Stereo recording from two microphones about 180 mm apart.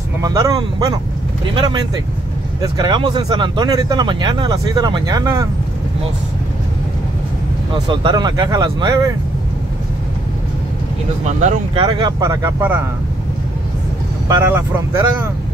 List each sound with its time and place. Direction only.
0.2 s speech: 20° right (ahead or behind)
2.8 s speech: 25° right (ahead or behind)
7.7 s speech: 25° right (ahead or behind)
11.2 s speech: 40° right (ahead or behind)
11.8 s speech: 25° right (ahead or behind)
14.2 s speech: 15° right (ahead or behind)